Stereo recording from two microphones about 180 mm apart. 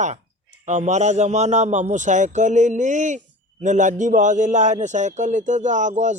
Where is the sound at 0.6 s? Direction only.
40° right (ahead or behind).